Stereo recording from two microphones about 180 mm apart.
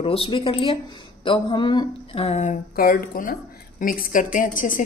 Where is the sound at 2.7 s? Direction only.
55° left (ahead or behind).